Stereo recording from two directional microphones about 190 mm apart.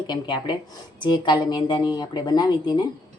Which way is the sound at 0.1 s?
25° left (ahead or behind).